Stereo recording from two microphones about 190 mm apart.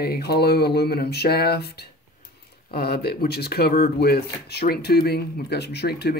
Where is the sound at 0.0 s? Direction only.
55° left (ahead or behind).